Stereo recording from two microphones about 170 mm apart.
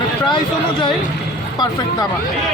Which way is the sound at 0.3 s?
25° left (ahead or behind).